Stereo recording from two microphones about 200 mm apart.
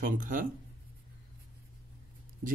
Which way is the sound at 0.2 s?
40° right (ahead or behind).